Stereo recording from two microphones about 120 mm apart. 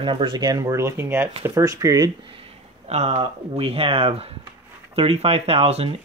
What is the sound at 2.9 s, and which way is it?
Speech, 60° right (ahead or behind).